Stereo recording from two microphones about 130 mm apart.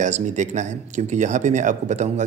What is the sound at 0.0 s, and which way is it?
Speech, 70° right (ahead or behind).